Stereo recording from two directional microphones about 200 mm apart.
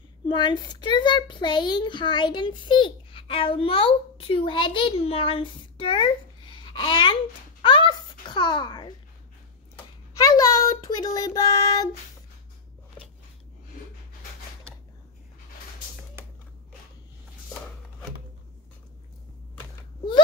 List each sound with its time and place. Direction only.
0.3 s a child's voice: 25° left (ahead or behind)
6.5 s babbling: 25° left (ahead or behind)
7.6 s a child's voice: 25° left (ahead or behind)
10.1 s a child's voice: 20° left (ahead or behind)
11.1 s music: 15° left (ahead or behind)